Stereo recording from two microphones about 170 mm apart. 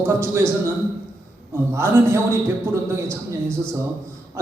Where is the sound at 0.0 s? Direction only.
15° right (ahead or behind).